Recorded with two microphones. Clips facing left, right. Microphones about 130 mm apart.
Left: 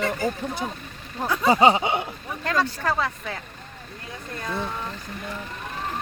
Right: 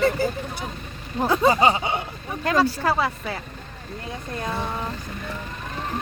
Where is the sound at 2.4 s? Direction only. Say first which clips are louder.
Right 4 dB; 10° right (ahead or behind).